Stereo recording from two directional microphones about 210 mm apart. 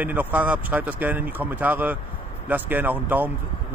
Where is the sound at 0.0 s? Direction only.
10° right (ahead or behind).